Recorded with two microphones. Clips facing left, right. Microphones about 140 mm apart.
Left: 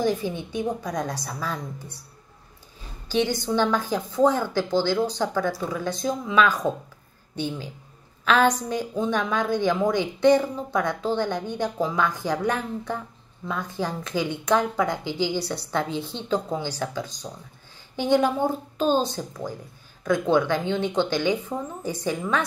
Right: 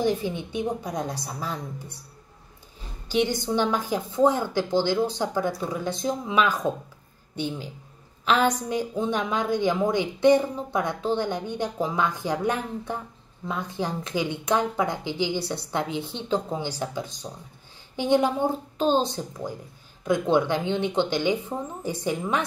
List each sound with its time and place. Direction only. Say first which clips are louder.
0.5 s speech: left 1 dB; 25° right (ahead or behind)
3.1 s a woman's voice: even; 20° right (ahead or behind)
8.6 s a woman's voice: even; 20° right (ahead or behind)